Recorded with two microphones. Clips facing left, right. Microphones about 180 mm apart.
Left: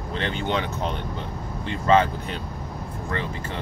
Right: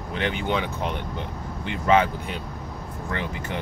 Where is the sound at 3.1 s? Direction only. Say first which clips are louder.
Even; 15° right (ahead or behind).